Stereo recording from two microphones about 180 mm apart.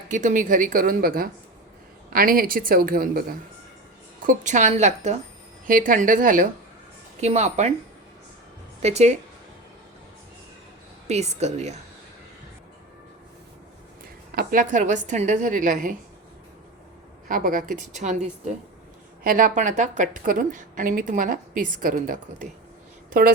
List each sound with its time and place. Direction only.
0.1 s a woman's voice: 45° right (ahead or behind)
5.6 s a woman's voice: 50° right (ahead or behind)
8.8 s a woman's voice: 40° right (ahead or behind)
11.1 s a woman's voice: 40° right (ahead or behind)
14.3 s a woman's voice: 50° right (ahead or behind)
17.2 s a woman's voice: 50° right (ahead or behind)
19.2 s a woman's voice: 50° right (ahead or behind)